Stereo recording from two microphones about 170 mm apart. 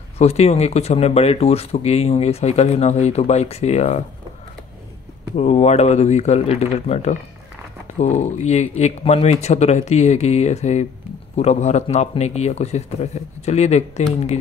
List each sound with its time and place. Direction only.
0.2 s speech: 40° left (ahead or behind)
5.3 s speech: 40° left (ahead or behind)